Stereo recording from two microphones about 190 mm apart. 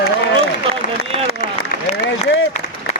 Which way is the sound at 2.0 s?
70° left (ahead or behind).